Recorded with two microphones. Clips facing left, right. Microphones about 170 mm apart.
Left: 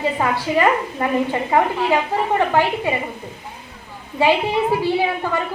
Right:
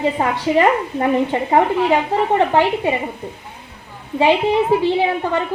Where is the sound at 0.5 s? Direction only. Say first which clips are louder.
Right 3 dB; 30° right (ahead or behind).